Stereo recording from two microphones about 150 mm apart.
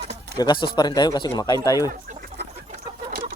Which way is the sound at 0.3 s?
30° left (ahead or behind).